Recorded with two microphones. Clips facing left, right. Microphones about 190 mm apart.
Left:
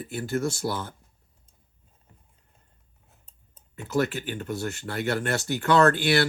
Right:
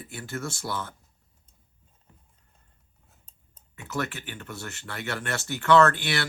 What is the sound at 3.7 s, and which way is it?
Speech, 30° left (ahead or behind).